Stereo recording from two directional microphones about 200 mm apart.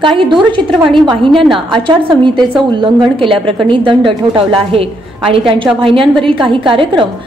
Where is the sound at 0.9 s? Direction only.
25° right (ahead or behind).